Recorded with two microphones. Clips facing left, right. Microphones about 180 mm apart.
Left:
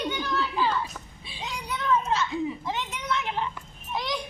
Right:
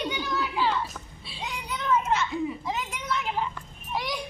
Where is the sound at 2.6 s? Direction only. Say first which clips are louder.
Even; 10° right (ahead or behind).